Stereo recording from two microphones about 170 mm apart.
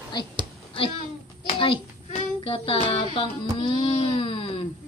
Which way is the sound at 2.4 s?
30° left (ahead or behind).